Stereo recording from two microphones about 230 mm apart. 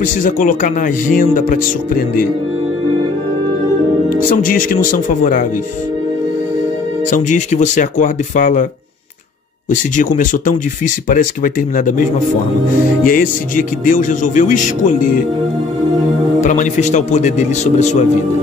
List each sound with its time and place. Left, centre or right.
0.0 s speech: left
4.1 s speech: left
7.1 s speech: left
9.7 s speech: left
16.3 s speech: left